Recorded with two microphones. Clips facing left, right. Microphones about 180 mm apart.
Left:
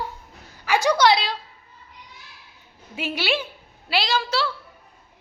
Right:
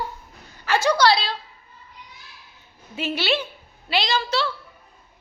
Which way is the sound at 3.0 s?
10° left (ahead or behind).